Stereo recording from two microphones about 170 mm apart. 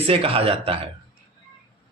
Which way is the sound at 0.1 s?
35° right (ahead or behind).